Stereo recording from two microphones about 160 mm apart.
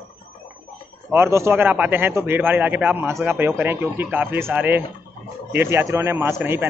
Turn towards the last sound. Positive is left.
turn(degrees=-15)  # may be behind; listen again after turning